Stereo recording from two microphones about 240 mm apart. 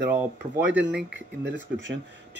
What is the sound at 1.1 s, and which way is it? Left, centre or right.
Speech, right.